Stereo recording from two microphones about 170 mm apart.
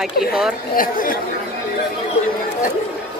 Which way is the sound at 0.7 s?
55° left (ahead or behind).